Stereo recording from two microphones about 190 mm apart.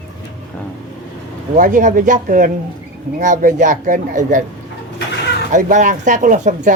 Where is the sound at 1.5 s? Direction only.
45° right (ahead or behind).